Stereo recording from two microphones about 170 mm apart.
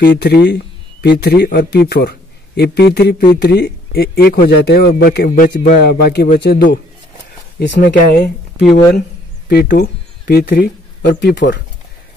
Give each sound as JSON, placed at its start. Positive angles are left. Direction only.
{"t": 0.0, "sound": "speech", "side_deg": 80}
{"t": 7.5, "sound": "speech", "side_deg": 90}
{"t": 7.8, "sound": "speech", "side_deg": 50}